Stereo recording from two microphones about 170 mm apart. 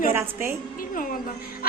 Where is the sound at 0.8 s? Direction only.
55° left (ahead or behind).